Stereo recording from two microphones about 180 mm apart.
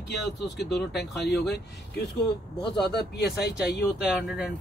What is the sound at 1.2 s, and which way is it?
Speech, 70° left (ahead or behind).